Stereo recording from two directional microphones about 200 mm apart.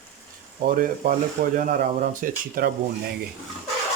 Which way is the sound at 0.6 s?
45° right (ahead or behind).